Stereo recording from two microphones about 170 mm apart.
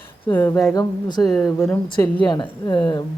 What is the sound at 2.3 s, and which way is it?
Speech, 25° left (ahead or behind).